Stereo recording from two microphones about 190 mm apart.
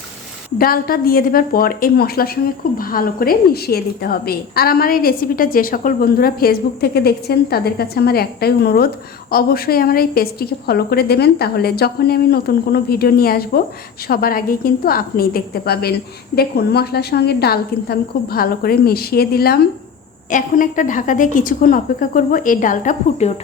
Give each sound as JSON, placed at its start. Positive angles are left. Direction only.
{"t": 0.6, "sound": "a woman's voice", "side_deg": 50}
{"t": 20.3, "sound": "a woman's voice", "side_deg": 45}